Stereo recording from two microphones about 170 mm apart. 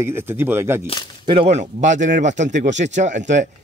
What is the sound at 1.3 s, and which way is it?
Speech, 35° right (ahead or behind).